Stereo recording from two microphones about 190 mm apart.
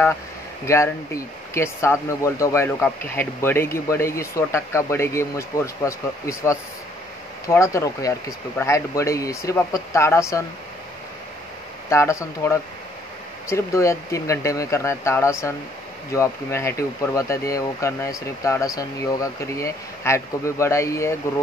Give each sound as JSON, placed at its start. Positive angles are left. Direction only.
{"t": 0.7, "sound": "speech", "side_deg": 15}
{"t": 11.9, "sound": "speech", "side_deg": 15}